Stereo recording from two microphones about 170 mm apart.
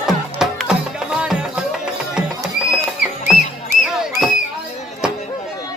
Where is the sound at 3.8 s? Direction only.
5° right (ahead or behind).